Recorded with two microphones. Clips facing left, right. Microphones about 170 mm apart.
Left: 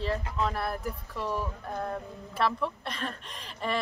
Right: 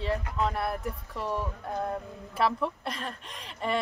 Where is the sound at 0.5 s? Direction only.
Centre (ahead or behind).